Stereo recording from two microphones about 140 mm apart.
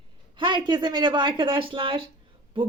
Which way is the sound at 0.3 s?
35° right (ahead or behind).